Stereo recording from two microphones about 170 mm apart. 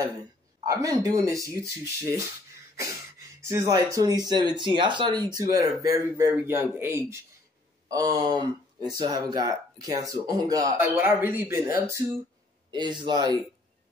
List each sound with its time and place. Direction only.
0.7 s speech: 20° right (ahead or behind)
3.3 s speech: 15° right (ahead or behind)
10.8 s speech: 10° right (ahead or behind)
12.7 s speech: 25° right (ahead or behind)